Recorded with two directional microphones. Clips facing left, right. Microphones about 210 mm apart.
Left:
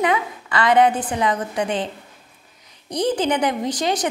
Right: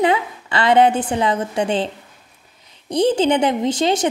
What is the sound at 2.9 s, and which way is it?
Speech, 25° right (ahead or behind).